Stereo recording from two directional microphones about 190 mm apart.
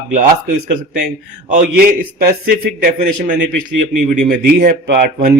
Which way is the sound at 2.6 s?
50° right (ahead or behind).